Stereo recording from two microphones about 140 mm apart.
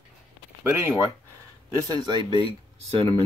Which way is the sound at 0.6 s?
15° right (ahead or behind).